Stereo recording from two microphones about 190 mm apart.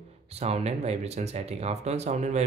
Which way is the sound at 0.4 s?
35° right (ahead or behind).